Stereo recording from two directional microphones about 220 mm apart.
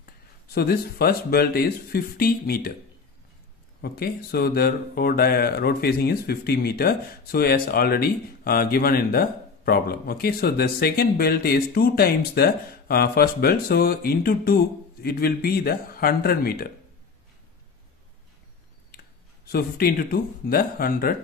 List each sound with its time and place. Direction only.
0.0 s speech: 45° left (ahead or behind)
3.8 s speech: 45° left (ahead or behind)
19.5 s speech: 45° left (ahead or behind)